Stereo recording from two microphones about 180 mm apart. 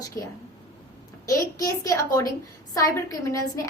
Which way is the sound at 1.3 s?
15° left (ahead or behind).